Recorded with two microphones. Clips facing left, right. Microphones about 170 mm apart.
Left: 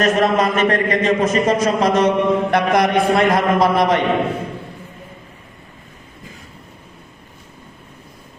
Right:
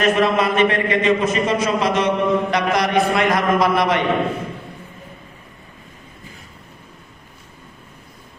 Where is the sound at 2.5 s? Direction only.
55° left (ahead or behind).